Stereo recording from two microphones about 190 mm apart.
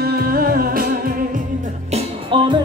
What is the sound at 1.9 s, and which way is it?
Music, 25° right (ahead or behind).